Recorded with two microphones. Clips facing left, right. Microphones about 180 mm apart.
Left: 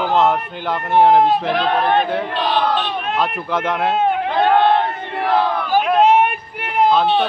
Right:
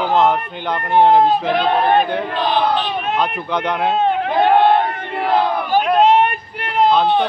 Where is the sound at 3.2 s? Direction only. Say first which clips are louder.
Even; centre (ahead or behind).